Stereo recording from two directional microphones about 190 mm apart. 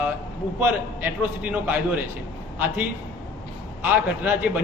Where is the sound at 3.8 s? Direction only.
10° right (ahead or behind).